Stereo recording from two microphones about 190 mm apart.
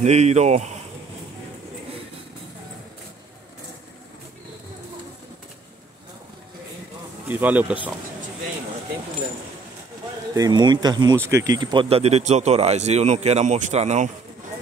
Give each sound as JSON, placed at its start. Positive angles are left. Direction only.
{"t": 0.0, "sound": "speech", "side_deg": -35}
{"t": 7.2, "sound": "speech", "side_deg": -10}
{"t": 10.3, "sound": "speech", "side_deg": -20}